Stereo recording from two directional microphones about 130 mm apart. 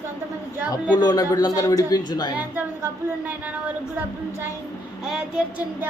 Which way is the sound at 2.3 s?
15° right (ahead or behind).